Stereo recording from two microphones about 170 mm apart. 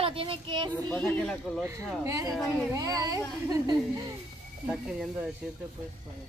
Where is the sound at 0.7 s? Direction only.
5° left (ahead or behind).